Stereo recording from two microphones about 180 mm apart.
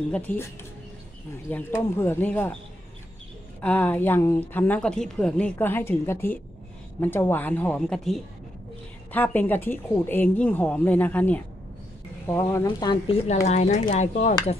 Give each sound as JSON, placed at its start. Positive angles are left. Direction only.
{"t": 0.1, "sound": "a woman's voice", "side_deg": 10}
{"t": 1.5, "sound": "a woman's voice", "side_deg": 10}
{"t": 3.6, "sound": "a woman's voice", "side_deg": 10}
{"t": 12.9, "sound": "speech", "side_deg": 30}